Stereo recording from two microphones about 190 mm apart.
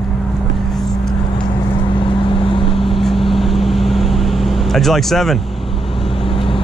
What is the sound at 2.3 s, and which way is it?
Vehicle, 30° left (ahead or behind).